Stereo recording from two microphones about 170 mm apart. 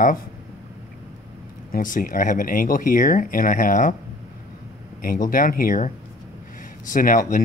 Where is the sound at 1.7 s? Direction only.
55° left (ahead or behind).